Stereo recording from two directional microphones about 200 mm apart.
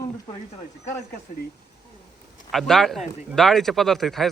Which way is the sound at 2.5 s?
Centre (ahead or behind).